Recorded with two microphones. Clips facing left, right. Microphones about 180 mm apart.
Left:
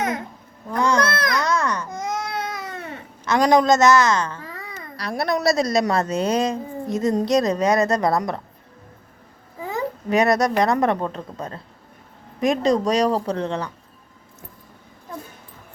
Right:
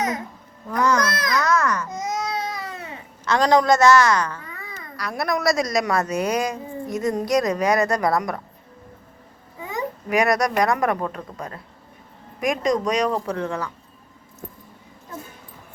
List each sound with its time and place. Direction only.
0.7 s babbling: 25° left (ahead or behind)
1.1 s babbling: 55° left (ahead or behind)
1.4 s baby cry: 30° left (ahead or behind)
1.9 s baby cry: 55° left (ahead or behind)
3.2 s a woman's voice: 15° left (ahead or behind)
10.1 s a woman's voice: 25° left (ahead or behind)